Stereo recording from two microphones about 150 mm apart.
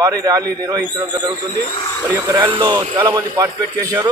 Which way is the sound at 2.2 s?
25° right (ahead or behind).